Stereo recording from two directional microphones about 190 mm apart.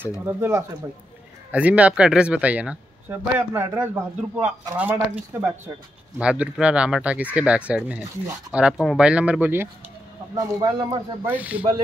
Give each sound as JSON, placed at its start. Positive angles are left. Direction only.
{"t": 0.2, "sound": "speech", "side_deg": -10}
{"t": 11.3, "sound": "speech", "side_deg": -5}